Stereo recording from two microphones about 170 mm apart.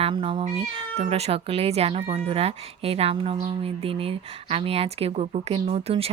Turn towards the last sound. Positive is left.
turn(degrees=-35)  # may be behind; listen again after turning